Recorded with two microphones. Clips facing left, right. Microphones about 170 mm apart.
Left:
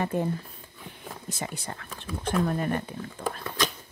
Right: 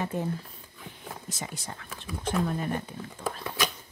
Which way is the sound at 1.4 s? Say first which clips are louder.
Left 6 dB; 60° left (ahead or behind).